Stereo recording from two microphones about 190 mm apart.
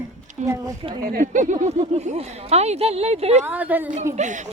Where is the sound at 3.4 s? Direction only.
10° right (ahead or behind).